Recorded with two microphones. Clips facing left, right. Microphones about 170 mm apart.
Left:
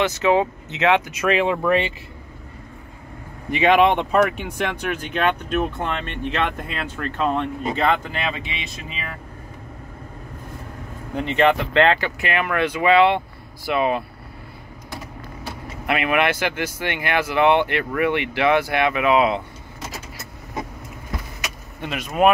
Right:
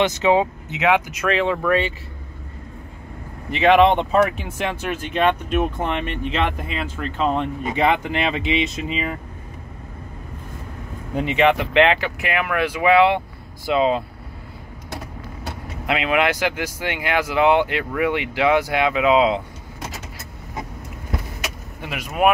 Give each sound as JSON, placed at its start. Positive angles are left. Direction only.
{"t": 0.0, "sound": "speech", "side_deg": -15}
{"t": 1.2, "sound": "speech", "side_deg": 15}
{"t": 3.5, "sound": "speech", "side_deg": 0}
{"t": 11.1, "sound": "speech", "side_deg": -5}
{"t": 15.9, "sound": "speech", "side_deg": -15}
{"t": 21.8, "sound": "speech", "side_deg": -10}